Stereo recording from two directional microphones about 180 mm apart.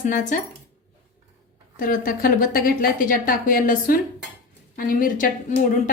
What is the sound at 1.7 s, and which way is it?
A woman's voice, 50° left (ahead or behind).